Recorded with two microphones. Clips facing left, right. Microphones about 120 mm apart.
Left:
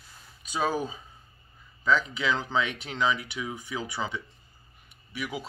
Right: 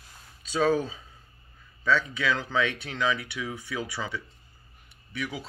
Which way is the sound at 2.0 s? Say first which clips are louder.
Even; 20° left (ahead or behind).